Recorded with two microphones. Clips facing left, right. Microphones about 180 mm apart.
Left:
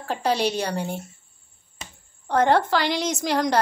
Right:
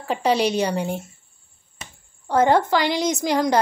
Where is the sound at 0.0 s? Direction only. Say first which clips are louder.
Right 3 dB; 10° right (ahead or behind).